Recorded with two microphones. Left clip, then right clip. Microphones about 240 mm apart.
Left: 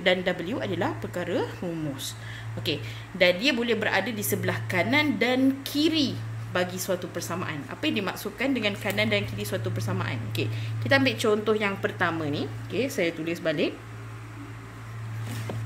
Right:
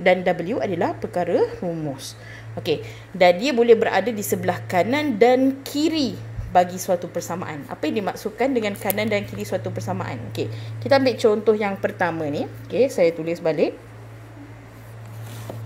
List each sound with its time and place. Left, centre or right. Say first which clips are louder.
0.0 s a woman's voice: right 6 dB; centre
2.6 s a woman's voice: right 6 dB; centre